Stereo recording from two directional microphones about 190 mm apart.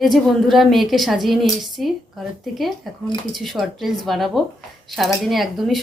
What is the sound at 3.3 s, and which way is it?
Speech, centre (ahead or behind).